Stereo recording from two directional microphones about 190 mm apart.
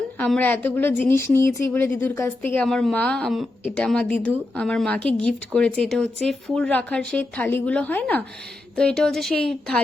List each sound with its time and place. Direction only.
0.2 s a woman's voice: 10° left (ahead or behind)